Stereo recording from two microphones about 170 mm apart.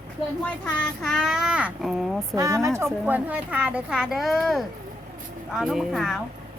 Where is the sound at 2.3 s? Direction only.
20° right (ahead or behind).